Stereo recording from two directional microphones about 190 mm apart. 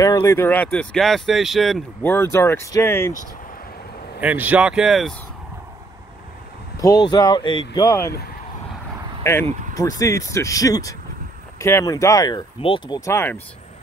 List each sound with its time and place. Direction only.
0.0 s speech: 15° left (ahead or behind); by 1.8 s centre (ahead or behind)
2.0 s speech: 15° left (ahead or behind)
4.2 s speech: 10° right (ahead or behind)
6.8 s speech: 20° left (ahead or behind)
9.2 s speech: 15° left (ahead or behind)
9.5 s vehicle: 40° right (ahead or behind)
9.8 s speech: 15° left (ahead or behind)